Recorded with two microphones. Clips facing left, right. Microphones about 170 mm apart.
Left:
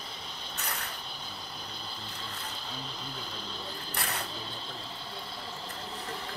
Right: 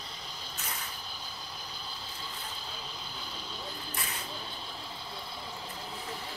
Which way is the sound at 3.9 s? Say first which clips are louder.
Left 8 dB; 70° left (ahead or behind).